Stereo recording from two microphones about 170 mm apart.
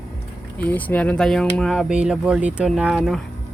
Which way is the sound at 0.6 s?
10° left (ahead or behind).